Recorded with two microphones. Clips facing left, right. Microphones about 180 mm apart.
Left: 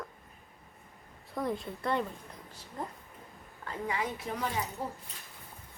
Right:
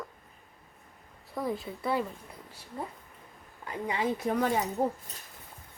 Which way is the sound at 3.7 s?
20° right (ahead or behind).